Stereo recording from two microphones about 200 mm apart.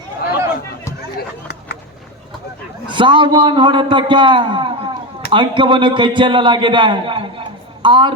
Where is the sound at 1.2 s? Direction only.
55° left (ahead or behind).